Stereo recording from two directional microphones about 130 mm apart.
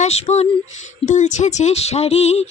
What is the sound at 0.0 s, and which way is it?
Speech, 55° left (ahead or behind).